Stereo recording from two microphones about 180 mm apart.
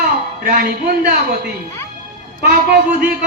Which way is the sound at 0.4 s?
50° right (ahead or behind).